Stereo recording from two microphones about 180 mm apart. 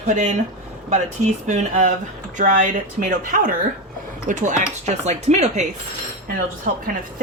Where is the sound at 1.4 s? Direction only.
45° right (ahead or behind).